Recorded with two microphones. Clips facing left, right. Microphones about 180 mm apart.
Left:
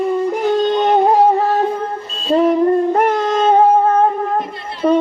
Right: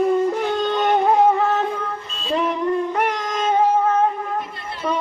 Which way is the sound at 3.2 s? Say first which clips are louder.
Left 8 dB; 30° left (ahead or behind).